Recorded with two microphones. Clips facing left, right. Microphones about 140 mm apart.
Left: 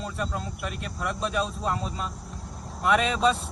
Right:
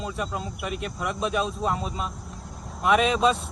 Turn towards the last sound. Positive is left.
turn(degrees=0)  # may be behind; listen again after turning